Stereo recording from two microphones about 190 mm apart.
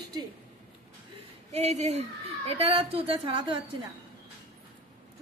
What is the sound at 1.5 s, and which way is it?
Speech, 35° right (ahead or behind).